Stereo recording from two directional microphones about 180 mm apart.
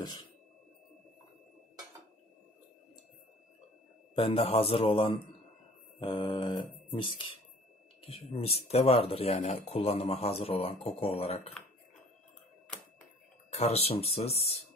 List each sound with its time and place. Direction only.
4.1 s speech: 30° left (ahead or behind)
13.5 s speech: 35° left (ahead or behind)